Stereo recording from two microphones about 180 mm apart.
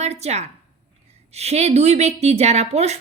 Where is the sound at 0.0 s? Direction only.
35° right (ahead or behind).